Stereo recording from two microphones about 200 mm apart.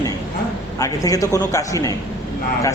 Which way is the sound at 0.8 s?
15° left (ahead or behind).